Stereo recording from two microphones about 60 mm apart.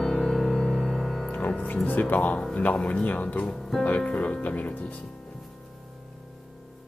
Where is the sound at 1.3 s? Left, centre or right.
Left.